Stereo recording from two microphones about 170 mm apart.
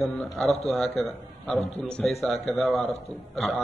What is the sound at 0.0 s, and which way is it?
Speech, centre (ahead or behind).